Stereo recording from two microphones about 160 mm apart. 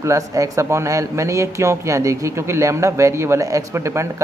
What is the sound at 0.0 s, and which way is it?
A man's voice, 20° right (ahead or behind).